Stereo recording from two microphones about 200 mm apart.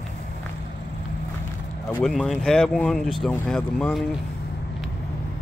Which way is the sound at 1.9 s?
5° left (ahead or behind).